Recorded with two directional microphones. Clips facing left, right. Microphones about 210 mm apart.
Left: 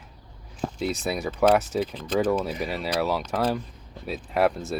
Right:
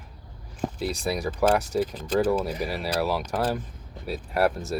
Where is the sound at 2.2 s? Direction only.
10° right (ahead or behind).